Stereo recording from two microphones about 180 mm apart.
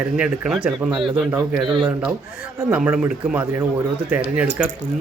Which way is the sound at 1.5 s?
25° right (ahead or behind).